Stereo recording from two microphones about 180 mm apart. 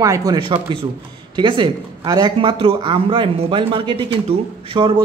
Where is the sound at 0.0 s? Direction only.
20° right (ahead or behind).